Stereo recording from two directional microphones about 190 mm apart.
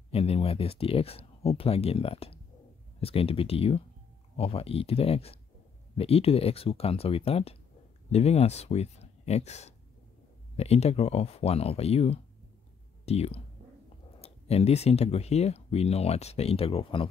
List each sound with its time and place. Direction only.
0.1 s speech: 30° left (ahead or behind)